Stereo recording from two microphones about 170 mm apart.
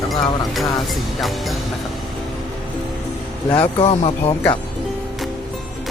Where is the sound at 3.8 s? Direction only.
35° left (ahead or behind).